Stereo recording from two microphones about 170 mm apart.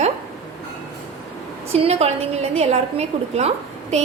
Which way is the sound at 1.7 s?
35° right (ahead or behind).